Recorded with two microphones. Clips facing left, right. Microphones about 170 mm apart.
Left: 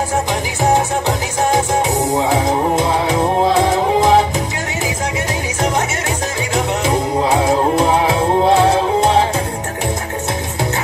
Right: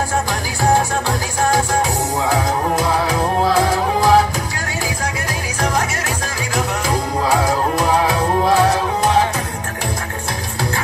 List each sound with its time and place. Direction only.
0.3 s music: 20° left (ahead or behind)
6.5 s music: 25° left (ahead or behind)